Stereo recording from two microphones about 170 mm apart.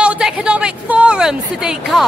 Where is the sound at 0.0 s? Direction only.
5° right (ahead or behind).